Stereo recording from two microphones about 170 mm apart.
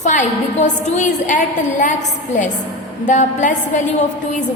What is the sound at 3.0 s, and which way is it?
Speech, 45° left (ahead or behind).